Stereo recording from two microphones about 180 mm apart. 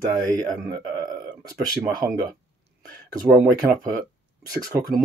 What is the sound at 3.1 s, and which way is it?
Speech, 20° right (ahead or behind).